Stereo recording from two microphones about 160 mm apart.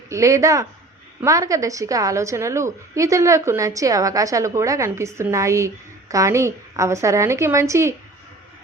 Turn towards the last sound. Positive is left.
turn(degrees=-20)  # may be behind; listen again after turning